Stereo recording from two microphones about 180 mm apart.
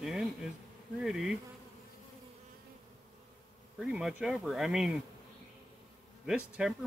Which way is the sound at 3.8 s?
Centre (ahead or behind).